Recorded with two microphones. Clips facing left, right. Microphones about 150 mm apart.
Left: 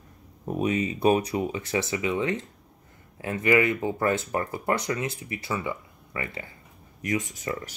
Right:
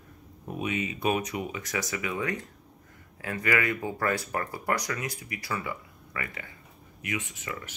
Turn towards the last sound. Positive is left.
turn(degrees=35)  # may be behind; listen again after turning